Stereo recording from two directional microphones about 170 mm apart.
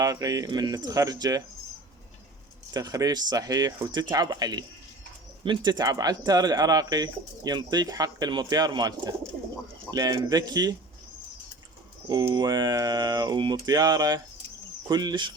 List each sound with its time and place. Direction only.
0.0 s speech: 20° right (ahead or behind)
2.7 s speech: 20° right (ahead or behind)
12.0 s speech: 25° right (ahead or behind)